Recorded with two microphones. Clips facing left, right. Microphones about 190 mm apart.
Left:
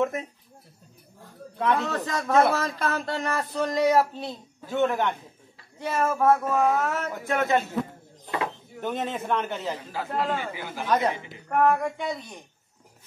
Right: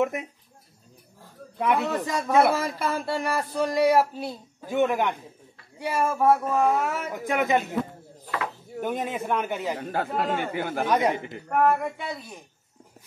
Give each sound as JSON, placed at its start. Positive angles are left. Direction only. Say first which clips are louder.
{"t": 0.0, "sound": "a man's voice", "louder": "right 1 dB", "side_deg": -15}
{"t": 1.6, "sound": "a man's voice", "louder": "right 1 dB", "side_deg": -10}
{"t": 8.8, "sound": "a man's voice", "louder": "even", "side_deg": -10}
{"t": 9.8, "sound": "speech", "louder": "right 5 dB", "side_deg": -60}
{"t": 10.0, "sound": "a man's voice", "louder": "left 2 dB", "side_deg": 0}
{"t": 10.4, "sound": "speech", "louder": "right 6 dB", "side_deg": -55}
{"t": 10.9, "sound": "a man's voice", "louder": "left 1 dB", "side_deg": -10}